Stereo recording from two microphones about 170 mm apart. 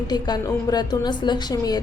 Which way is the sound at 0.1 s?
25° left (ahead or behind).